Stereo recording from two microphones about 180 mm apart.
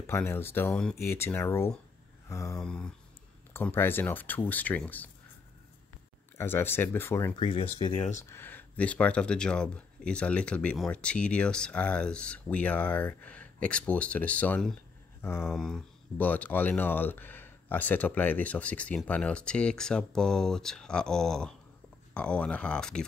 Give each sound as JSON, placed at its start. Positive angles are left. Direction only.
{"t": 0.0, "sound": "speech", "side_deg": 15}
{"t": 2.2, "sound": "mantra", "side_deg": 15}
{"t": 2.5, "sound": "speech", "side_deg": 5}
{"t": 6.3, "sound": "speech", "side_deg": 10}
{"t": 7.3, "sound": "speech", "side_deg": 30}
{"t": 8.1, "sound": "speech", "side_deg": 15}